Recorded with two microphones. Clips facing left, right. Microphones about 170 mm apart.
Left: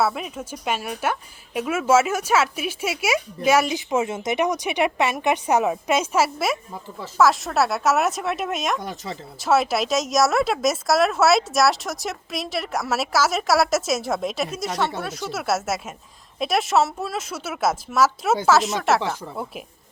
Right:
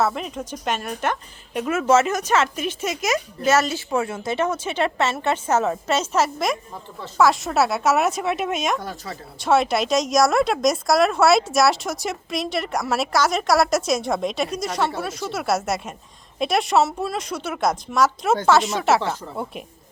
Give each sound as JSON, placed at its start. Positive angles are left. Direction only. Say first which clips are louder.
{"t": 0.0, "sound": "speech", "louder": "even", "side_deg": 5}
{"t": 8.8, "sound": "speech", "louder": "left 1 dB", "side_deg": 20}
{"t": 9.4, "sound": "speech", "louder": "right 1 dB", "side_deg": 0}